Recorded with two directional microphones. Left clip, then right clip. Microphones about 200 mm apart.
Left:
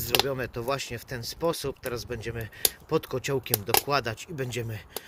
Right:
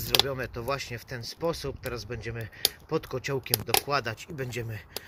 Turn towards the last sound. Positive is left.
turn(degrees=10)  # may be behind; listen again after turning